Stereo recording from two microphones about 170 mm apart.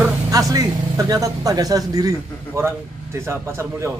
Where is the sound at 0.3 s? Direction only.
20° right (ahead or behind).